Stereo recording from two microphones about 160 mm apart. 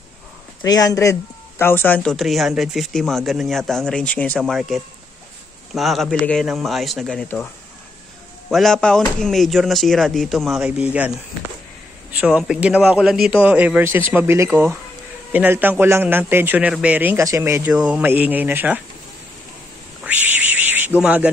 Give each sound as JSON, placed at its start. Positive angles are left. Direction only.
{"t": 0.7, "sound": "speech", "side_deg": 20}
{"t": 2.1, "sound": "speech", "side_deg": 0}
{"t": 8.5, "sound": "speech", "side_deg": 0}
{"t": 12.2, "sound": "a man's voice", "side_deg": -5}
{"t": 20.0, "sound": "a sound", "side_deg": -10}
{"t": 21.0, "sound": "a man's voice", "side_deg": -5}